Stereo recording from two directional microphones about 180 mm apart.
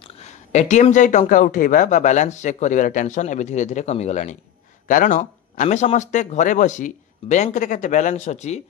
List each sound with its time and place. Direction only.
0.0 s speech: 40° left (ahead or behind)